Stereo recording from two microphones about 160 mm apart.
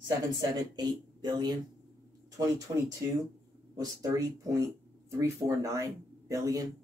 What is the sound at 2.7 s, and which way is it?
Speech, 25° right (ahead or behind).